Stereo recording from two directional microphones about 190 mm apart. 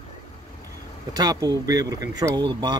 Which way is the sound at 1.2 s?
20° right (ahead or behind).